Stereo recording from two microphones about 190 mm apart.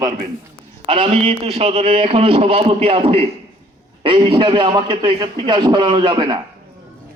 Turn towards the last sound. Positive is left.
turn(degrees=-25)  # may be behind; listen again after turning